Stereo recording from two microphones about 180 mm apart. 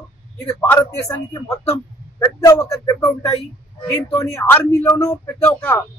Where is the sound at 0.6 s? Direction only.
15° left (ahead or behind).